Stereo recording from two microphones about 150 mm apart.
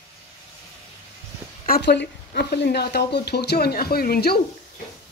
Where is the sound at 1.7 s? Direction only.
90° left.